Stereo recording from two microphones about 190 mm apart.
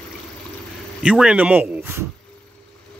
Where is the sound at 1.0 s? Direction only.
5° right (ahead or behind).